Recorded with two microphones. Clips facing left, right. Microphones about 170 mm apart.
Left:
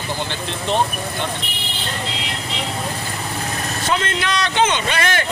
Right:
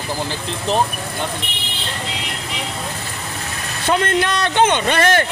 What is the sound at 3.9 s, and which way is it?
A man's voice, 55° right (ahead or behind).